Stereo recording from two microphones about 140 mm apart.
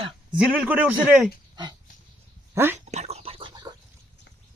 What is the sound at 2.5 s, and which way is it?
Speech, 15° right (ahead or behind).